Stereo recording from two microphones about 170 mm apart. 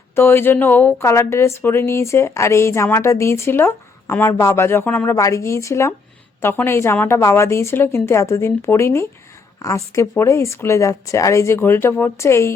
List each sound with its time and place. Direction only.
0.2 s speech: 15° left (ahead or behind)